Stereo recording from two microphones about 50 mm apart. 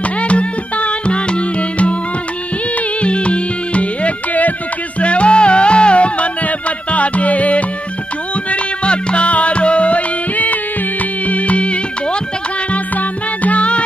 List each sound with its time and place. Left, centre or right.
0.2 s music: left
3.0 s music: left